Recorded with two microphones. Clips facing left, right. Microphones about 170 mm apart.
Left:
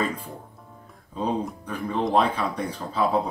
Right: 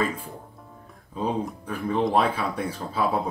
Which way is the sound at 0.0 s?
5° right (ahead or behind).